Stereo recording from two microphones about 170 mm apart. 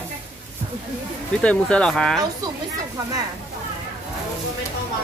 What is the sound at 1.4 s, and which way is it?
Speech, 5° left (ahead or behind).